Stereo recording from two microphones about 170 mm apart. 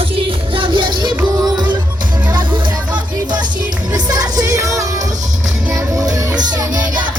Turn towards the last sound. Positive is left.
turn(degrees=-25)  # may be behind; listen again after turning